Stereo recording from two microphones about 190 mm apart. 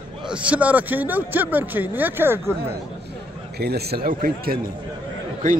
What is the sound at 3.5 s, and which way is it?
A man's voice, 55° right (ahead or behind).